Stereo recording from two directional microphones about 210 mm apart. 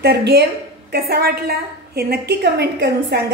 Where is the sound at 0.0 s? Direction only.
50° right (ahead or behind).